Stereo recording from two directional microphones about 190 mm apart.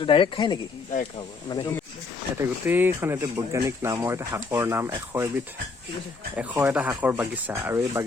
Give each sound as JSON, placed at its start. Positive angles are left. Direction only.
{"t": 0.0, "sound": "speech", "side_deg": 25}
{"t": 2.4, "sound": "speech", "side_deg": -10}
{"t": 6.3, "sound": "speech", "side_deg": -5}